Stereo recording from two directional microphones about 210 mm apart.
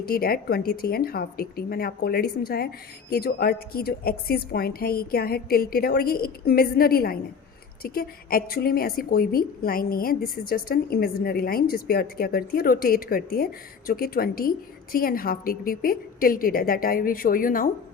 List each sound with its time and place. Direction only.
0.0 s speech: 45° left (ahead or behind)